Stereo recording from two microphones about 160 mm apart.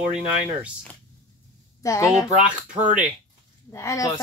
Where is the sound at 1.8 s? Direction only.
20° left (ahead or behind).